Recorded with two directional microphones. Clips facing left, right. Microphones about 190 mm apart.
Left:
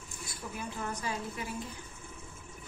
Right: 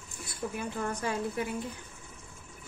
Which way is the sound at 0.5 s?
55° right (ahead or behind).